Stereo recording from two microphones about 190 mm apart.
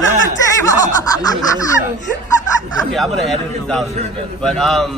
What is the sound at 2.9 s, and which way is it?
A man's voice, centre (ahead or behind).